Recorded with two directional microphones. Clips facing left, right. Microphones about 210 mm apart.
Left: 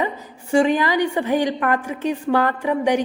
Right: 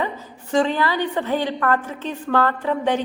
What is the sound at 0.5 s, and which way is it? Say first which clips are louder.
A woman's voice: left 3 dB; 15° left (ahead or behind).